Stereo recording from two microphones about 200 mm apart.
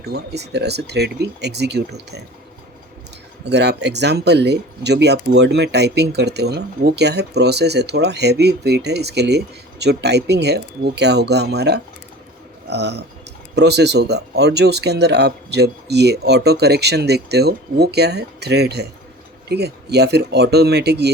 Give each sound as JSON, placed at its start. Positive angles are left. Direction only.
{"t": 0.0, "sound": "speech", "side_deg": -55}
{"t": 3.4, "sound": "speech", "side_deg": -55}